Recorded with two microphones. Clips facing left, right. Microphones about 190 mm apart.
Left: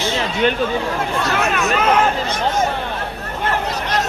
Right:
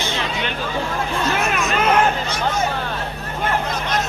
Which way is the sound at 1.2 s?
65° left (ahead or behind).